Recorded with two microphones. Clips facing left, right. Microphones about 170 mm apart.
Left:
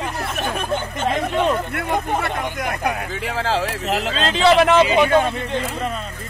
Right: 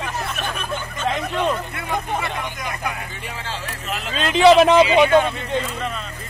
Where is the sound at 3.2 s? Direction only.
90° left; by 4.1 s 70° left (ahead or behind).